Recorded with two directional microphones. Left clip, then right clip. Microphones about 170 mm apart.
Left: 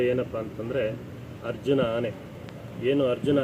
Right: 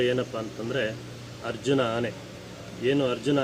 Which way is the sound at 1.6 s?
10° right (ahead or behind).